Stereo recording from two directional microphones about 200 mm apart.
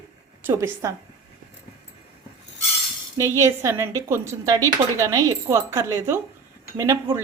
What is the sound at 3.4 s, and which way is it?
A woman's voice, 15° right (ahead or behind).